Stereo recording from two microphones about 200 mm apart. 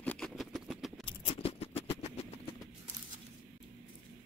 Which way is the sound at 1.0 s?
30° left (ahead or behind).